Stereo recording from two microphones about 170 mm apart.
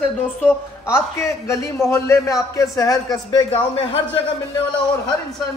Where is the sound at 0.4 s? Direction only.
10° left (ahead or behind); by 4.2 s 30° left (ahead or behind).